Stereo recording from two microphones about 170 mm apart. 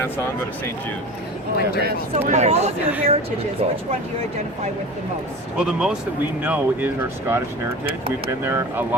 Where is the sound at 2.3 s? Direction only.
40° right (ahead or behind).